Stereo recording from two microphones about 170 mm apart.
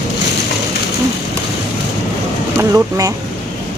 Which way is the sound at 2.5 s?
20° right (ahead or behind).